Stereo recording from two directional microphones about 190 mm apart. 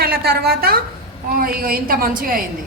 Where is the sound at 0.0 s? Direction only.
55° right (ahead or behind).